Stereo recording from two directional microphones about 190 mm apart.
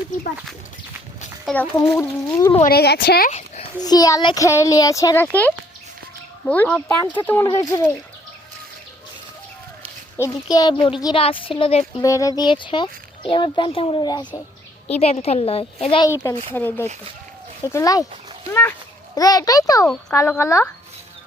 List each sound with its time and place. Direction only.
1.7 s speech: 15° left (ahead or behind)
2.6 s speech: 55° left (ahead or behind)
3.3 s a sound: 35° left (ahead or behind)
3.8 s speech: 20° left (ahead or behind)
10.2 s a child's voice: 15° left (ahead or behind)
12.0 s a child's voice: 15° left (ahead or behind)
14.8 s a woman's voice: 35° left (ahead or behind)
16.0 s speech: 15° left (ahead or behind)
19.1 s a child's voice: 20° left (ahead or behind)